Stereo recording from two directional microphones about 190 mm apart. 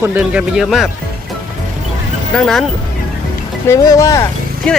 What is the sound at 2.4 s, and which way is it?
Speech, centre (ahead or behind).